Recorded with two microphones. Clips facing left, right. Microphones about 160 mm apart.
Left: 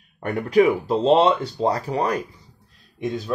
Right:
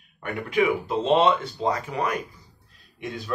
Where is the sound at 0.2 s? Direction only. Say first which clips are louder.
Left 6 dB; 40° left (ahead or behind).